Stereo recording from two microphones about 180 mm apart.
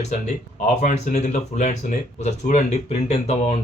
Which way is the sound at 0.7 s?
40° left (ahead or behind).